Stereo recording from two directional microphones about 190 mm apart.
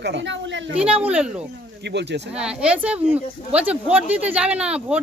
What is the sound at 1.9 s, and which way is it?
Speech, 65° right (ahead or behind).